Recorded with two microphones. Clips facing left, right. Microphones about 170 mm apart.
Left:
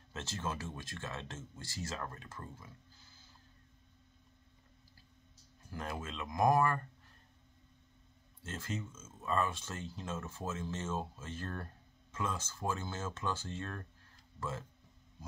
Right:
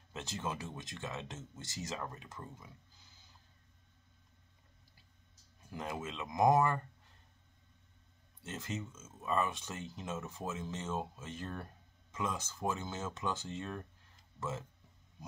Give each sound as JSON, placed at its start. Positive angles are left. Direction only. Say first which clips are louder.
{"t": 0.1, "sound": "speech", "louder": "even", "side_deg": -15}
{"t": 5.7, "sound": "speech", "louder": "right 1 dB", "side_deg": -15}
{"t": 8.5, "sound": "speech", "louder": "even", "side_deg": -20}